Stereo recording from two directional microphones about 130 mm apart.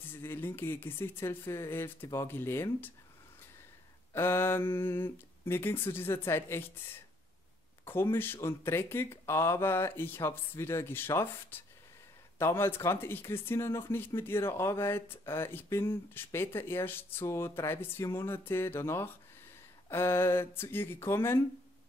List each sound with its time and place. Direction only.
0.1 s speech: 15° left (ahead or behind)
4.1 s speech: 20° left (ahead or behind)
7.8 s speech: 15° left (ahead or behind)